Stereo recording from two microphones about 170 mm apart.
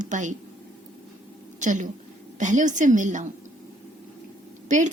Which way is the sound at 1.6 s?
45° right (ahead or behind).